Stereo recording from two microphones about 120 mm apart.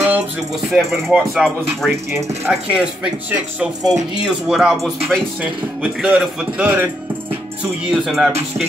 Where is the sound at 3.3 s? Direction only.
5° right (ahead or behind).